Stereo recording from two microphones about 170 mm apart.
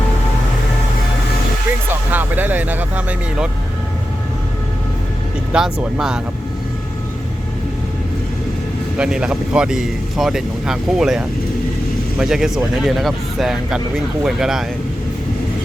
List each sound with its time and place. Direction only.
1.9 s speech: 10° right (ahead or behind)
5.5 s speech: 5° right (ahead or behind)
9.0 s speech: 5° right (ahead or behind)
12.2 s speech: 5° right (ahead or behind)